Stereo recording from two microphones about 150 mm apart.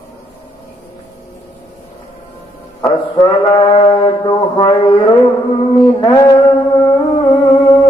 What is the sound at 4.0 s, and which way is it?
Music, 30° left (ahead or behind).